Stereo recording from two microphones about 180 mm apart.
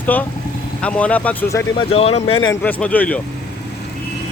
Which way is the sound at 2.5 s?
10° left (ahead or behind).